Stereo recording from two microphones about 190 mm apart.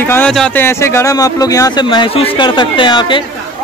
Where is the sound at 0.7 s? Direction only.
15° left (ahead or behind).